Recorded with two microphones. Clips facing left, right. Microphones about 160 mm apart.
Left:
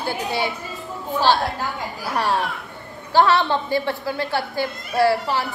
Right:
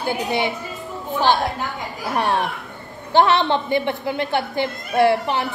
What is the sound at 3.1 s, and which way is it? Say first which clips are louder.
A woman's voice: right 1 dB; 20° right (ahead or behind).